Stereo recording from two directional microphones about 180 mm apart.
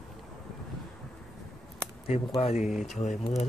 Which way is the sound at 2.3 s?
35° left (ahead or behind).